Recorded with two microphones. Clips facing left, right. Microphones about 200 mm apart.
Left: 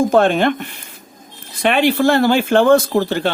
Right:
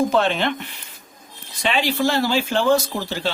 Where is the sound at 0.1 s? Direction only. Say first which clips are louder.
Left 6 dB; 50° left (ahead or behind).